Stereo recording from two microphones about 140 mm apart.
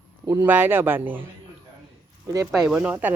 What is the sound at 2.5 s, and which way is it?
Speech, centre (ahead or behind).